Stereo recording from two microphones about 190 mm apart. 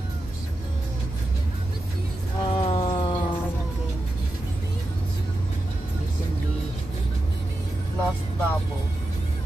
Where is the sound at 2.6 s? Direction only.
30° left (ahead or behind).